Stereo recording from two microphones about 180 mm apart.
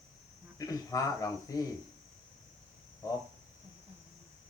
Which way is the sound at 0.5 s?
20° left (ahead or behind).